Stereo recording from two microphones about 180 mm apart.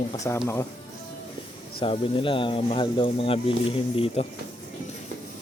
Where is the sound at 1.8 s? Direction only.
30° left (ahead or behind).